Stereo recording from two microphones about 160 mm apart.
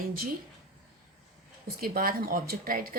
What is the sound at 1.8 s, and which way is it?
Speech, 65° right (ahead or behind).